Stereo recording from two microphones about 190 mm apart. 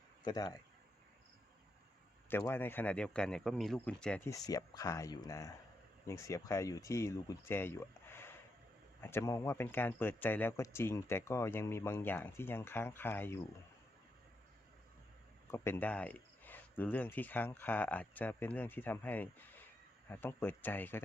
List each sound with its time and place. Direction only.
0.3 s speech: 20° left (ahead or behind)
2.3 s speech: 10° left (ahead or behind)
4.3 s speech: 20° left (ahead or behind)
15.4 s speech: 15° left (ahead or behind)